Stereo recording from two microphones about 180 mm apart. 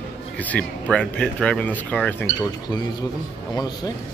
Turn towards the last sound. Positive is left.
turn(degrees=20)  # may be behind; listen again after turning